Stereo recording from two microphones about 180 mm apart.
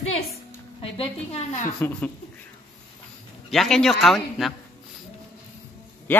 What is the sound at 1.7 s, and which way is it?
Speech, 10° left (ahead or behind).